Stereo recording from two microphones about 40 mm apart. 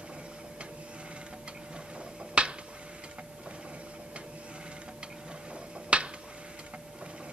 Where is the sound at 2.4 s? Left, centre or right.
Right.